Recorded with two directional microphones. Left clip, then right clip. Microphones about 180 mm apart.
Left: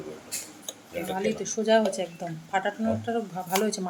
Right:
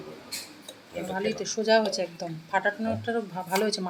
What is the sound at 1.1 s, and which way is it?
Speech, centre (ahead or behind).